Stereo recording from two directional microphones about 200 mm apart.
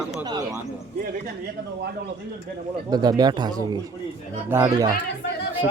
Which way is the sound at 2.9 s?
20° right (ahead or behind).